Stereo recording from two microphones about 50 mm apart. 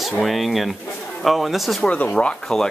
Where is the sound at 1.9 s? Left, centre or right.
Left.